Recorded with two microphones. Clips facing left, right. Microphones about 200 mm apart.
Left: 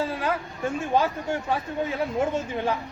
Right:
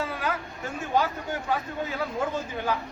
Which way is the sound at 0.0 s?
30° left (ahead or behind).